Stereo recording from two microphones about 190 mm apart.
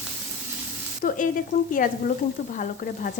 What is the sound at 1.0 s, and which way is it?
Speech, 45° left (ahead or behind).